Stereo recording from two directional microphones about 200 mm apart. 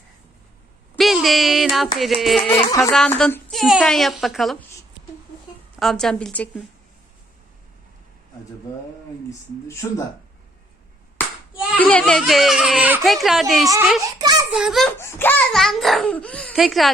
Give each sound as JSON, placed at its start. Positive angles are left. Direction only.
{"t": 0.9, "sound": "a child's voice", "side_deg": 0}
{"t": 2.6, "sound": "music", "side_deg": 20}
{"t": 2.9, "sound": "a child's voice", "side_deg": 5}
{"t": 5.8, "sound": "a child's voice", "side_deg": 0}
{"t": 9.8, "sound": "speech", "side_deg": 15}
{"t": 11.8, "sound": "a child's voice", "side_deg": 5}
{"t": 14.1, "sound": "a sound", "side_deg": -20}
{"t": 14.5, "sound": "a child's voice", "side_deg": 0}
{"t": 14.9, "sound": "a child's voice", "side_deg": 10}